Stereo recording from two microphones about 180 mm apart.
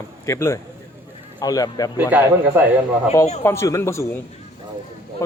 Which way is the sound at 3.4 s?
15° left (ahead or behind).